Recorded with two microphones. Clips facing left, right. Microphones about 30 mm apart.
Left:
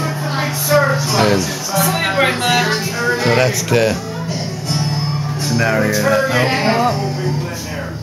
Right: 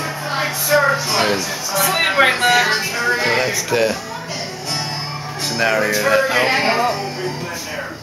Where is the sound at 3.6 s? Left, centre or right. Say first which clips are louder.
Left 2 dB; centre.